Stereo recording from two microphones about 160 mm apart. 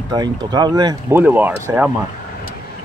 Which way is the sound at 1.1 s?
10° right (ahead or behind).